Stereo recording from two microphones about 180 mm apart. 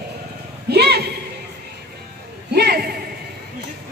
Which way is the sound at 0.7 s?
65° right (ahead or behind).